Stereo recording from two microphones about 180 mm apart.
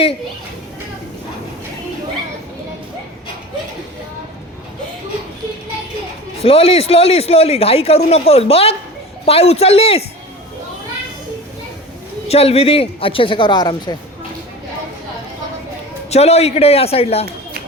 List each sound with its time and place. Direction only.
6.4 s speech: 35° left (ahead or behind)
12.3 s speech: 35° left (ahead or behind)
16.0 s speech: 35° left (ahead or behind)